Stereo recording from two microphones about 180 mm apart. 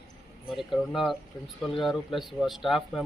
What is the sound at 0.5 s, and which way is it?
Speech, centre (ahead or behind).